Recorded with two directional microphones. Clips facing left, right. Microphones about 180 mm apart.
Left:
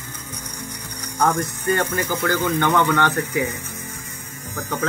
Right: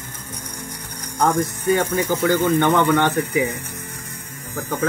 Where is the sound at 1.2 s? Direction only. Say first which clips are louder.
Right 2 dB; 15° right (ahead or behind).